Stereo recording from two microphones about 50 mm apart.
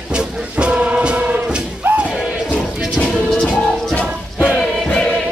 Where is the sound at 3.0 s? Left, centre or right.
Centre.